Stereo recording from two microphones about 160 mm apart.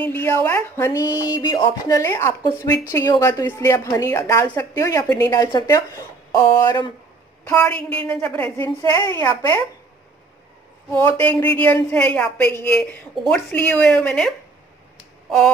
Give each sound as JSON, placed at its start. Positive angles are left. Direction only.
{"t": 0.0, "sound": "a woman's voice", "side_deg": 15}
{"t": 7.4, "sound": "a woman's voice", "side_deg": 10}
{"t": 10.9, "sound": "a woman's voice", "side_deg": 15}
{"t": 15.2, "sound": "a sound", "side_deg": 5}